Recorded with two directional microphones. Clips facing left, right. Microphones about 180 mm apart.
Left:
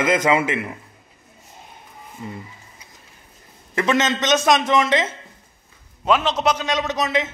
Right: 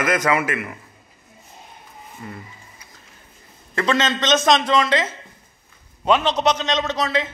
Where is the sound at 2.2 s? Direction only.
20° left (ahead or behind).